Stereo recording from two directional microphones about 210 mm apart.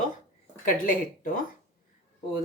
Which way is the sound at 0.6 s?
40° left (ahead or behind).